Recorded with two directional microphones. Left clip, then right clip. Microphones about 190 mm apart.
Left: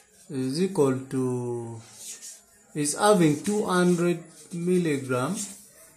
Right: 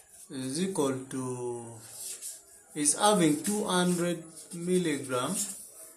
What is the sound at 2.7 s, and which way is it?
Speech, 60° left (ahead or behind).